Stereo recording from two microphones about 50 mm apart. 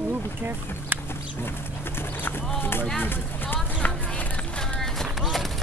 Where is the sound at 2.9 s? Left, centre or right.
Left.